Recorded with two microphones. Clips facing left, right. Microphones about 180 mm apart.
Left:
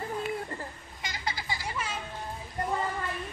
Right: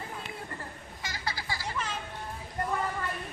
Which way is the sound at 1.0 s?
20° left (ahead or behind).